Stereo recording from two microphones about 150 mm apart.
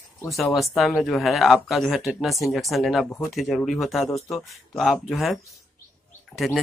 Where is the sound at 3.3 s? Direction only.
Centre (ahead or behind).